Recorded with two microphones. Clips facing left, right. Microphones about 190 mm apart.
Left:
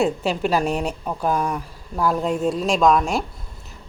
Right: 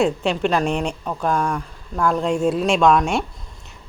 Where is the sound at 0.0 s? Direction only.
5° left (ahead or behind).